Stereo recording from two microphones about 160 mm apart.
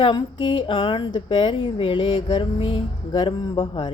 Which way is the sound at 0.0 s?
30° left (ahead or behind).